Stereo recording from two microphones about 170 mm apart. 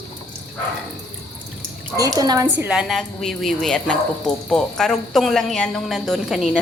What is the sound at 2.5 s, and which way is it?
A woman's voice, 5° right (ahead or behind).